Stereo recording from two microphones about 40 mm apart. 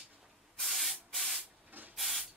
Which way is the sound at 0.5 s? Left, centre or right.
Centre.